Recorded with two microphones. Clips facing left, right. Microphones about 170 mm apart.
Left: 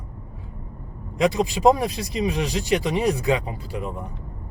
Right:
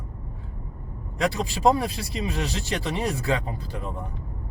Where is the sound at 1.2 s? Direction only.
15° left (ahead or behind).